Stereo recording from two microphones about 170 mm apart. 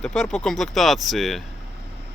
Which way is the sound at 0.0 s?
5° left (ahead or behind).